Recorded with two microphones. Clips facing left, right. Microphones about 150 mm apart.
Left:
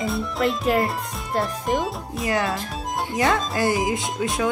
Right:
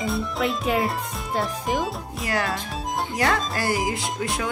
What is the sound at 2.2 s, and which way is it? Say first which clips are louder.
Speech: left 3 dB; 20° left (ahead or behind).